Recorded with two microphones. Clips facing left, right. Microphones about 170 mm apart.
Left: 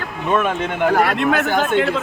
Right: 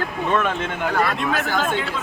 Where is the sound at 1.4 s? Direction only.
50° left (ahead or behind).